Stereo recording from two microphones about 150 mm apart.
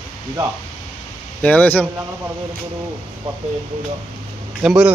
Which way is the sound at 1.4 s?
10° left (ahead or behind).